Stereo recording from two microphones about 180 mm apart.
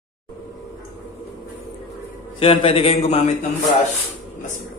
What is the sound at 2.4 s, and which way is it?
A man's voice, 30° left (ahead or behind).